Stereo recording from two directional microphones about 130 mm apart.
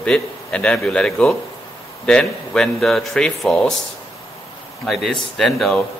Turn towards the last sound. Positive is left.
turn(degrees=0)  # may be behind; listen again after turning